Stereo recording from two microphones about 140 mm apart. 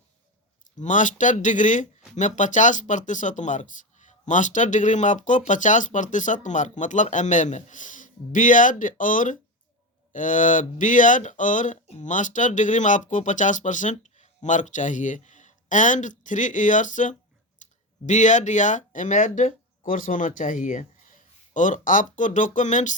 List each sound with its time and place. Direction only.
0.8 s speech: 65° left (ahead or behind)